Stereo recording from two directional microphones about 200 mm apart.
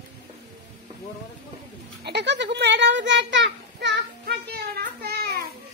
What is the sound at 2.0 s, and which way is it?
A child's voice, 55° right (ahead or behind).